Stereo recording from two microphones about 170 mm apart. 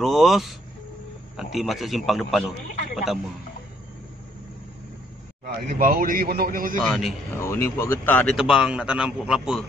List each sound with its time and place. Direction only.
0.0 s a man's voice: centre (ahead or behind)
5.4 s a man's voice: 55° right (ahead or behind)
6.9 s a man's voice: centre (ahead or behind)
7.3 s speech: 15° left (ahead or behind)
8.4 s a man's voice: 5° right (ahead or behind)